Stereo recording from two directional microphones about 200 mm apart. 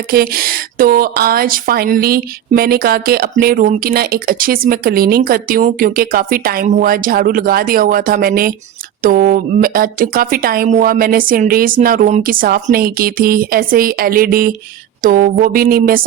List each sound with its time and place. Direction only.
0.1 s speech: 50° right (ahead or behind)